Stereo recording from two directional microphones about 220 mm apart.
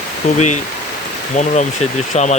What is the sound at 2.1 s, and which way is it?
Speech, 30° left (ahead or behind).